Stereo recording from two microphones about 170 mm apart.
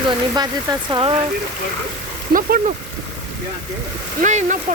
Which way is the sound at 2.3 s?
55° right (ahead or behind).